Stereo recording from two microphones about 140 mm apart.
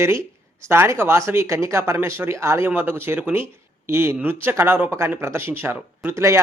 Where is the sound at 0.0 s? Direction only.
20° right (ahead or behind).